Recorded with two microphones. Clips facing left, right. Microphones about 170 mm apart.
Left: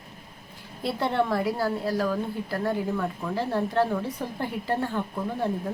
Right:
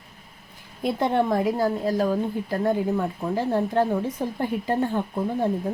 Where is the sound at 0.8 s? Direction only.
15° right (ahead or behind).